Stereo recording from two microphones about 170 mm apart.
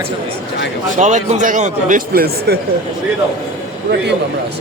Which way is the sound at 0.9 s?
45° right (ahead or behind).